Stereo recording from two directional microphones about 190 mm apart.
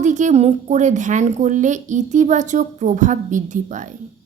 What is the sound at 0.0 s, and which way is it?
A woman's voice, 40° right (ahead or behind).